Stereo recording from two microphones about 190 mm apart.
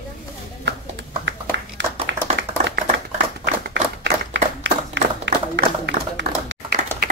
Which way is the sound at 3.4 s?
70° right (ahead or behind).